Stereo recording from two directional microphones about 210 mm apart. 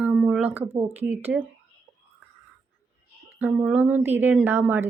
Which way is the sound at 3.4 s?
5° right (ahead or behind).